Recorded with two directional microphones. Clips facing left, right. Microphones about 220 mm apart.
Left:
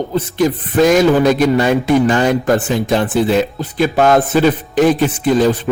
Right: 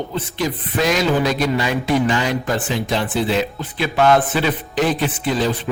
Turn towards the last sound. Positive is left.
turn(degrees=45)  # may be behind; listen again after turning